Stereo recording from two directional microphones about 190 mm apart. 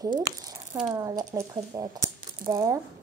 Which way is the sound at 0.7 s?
5° right (ahead or behind).